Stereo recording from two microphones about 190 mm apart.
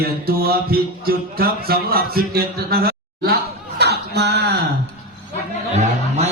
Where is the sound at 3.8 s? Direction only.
60° right (ahead or behind).